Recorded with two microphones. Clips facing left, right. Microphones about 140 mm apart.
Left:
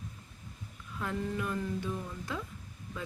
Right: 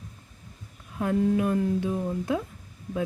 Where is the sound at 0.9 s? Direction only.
50° right (ahead or behind).